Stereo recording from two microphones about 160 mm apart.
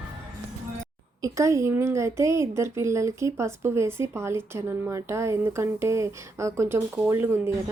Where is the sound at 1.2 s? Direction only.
20° right (ahead or behind).